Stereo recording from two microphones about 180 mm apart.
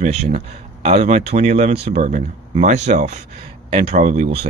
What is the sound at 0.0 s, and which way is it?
Speech, 40° right (ahead or behind).